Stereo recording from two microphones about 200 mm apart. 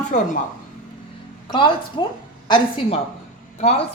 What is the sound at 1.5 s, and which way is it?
A woman's voice, 25° left (ahead or behind).